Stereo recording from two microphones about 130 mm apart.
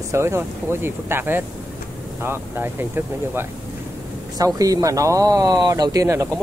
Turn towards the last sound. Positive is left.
turn(degrees=-25)  # may be behind; listen again after turning